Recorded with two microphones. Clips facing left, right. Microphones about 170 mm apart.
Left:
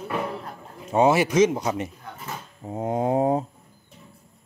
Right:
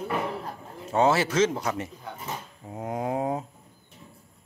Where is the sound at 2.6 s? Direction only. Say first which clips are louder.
Left 7 dB; 30° left (ahead or behind).